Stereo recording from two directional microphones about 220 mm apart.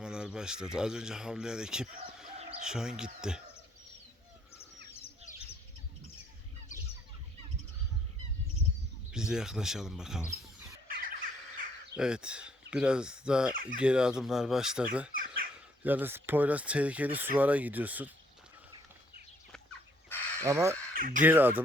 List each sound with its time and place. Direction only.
0.0 s speech: 5° right (ahead or behind)
9.1 s speech: 5° right (ahead or behind)
10.8 s bird: 40° right (ahead or behind)
11.9 s speech: 5° right (ahead or behind)
13.5 s speech: 40° right (ahead or behind)
13.8 s speech: 5° right (ahead or behind)
15.1 s speech: 40° right (ahead or behind)
15.8 s speech: 10° right (ahead or behind)
20.4 s speech: 15° right (ahead or behind)
20.9 s speech: 40° right (ahead or behind)
21.2 s speech: 10° right (ahead or behind)